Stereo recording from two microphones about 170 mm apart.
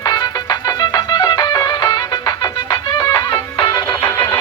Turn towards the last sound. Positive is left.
turn(degrees=15)  # may be behind; listen again after turning